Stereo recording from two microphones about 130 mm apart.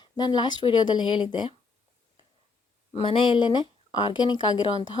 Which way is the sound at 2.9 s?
45° left (ahead or behind).